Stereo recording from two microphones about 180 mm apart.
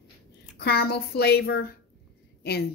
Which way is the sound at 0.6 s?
60° left (ahead or behind).